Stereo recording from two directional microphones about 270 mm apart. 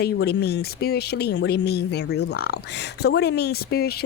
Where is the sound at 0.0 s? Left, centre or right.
Left.